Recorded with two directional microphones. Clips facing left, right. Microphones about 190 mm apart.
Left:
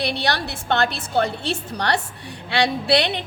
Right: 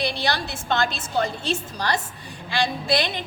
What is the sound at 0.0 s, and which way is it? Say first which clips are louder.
A woman's voice: left 2 dB; 65° left (ahead or behind).